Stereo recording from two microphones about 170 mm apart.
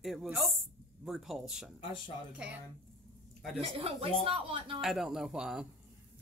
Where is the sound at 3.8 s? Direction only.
35° right (ahead or behind).